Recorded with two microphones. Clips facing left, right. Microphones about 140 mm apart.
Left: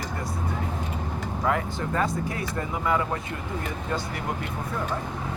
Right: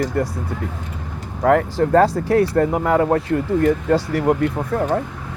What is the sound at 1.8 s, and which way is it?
Speech, 60° right (ahead or behind).